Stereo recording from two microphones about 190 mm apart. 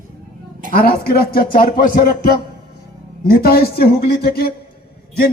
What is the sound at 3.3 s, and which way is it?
A man's voice, 55° left (ahead or behind).